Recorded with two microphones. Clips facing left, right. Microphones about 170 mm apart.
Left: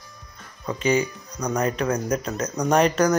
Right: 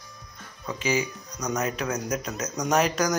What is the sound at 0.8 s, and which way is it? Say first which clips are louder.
Speech: left 5 dB; 5° right (ahead or behind).